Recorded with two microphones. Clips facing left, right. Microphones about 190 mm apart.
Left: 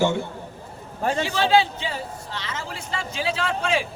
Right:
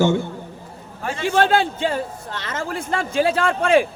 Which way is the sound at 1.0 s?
40° left (ahead or behind).